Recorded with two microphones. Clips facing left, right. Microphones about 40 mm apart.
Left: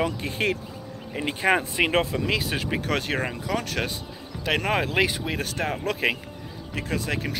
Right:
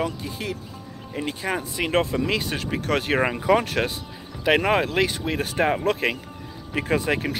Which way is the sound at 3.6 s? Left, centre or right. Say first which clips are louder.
Right 3 dB; centre.